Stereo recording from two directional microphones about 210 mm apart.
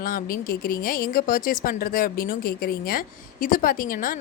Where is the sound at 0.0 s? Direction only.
45° left (ahead or behind).